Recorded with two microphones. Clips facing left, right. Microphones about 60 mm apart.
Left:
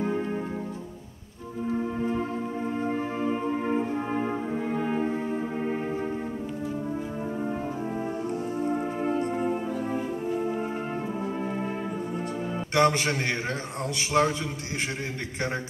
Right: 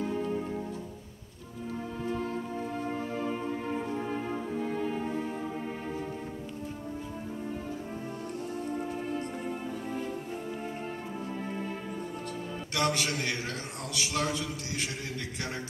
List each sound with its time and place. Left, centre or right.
0.0 s music: left
1.7 s music: left
8.6 s music: left
12.7 s music: left
13.9 s a man's voice: left